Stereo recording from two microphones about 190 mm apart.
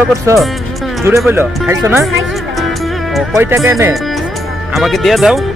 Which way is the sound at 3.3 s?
15° right (ahead or behind).